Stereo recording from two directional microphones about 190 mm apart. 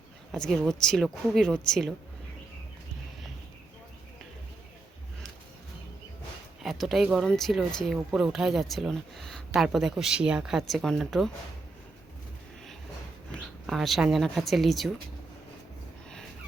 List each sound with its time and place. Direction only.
0.3 s speech: centre (ahead or behind)
6.6 s speech: centre (ahead or behind)
13.3 s speech: centre (ahead or behind)